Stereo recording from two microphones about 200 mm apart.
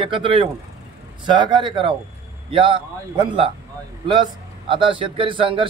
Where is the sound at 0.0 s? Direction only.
25° right (ahead or behind).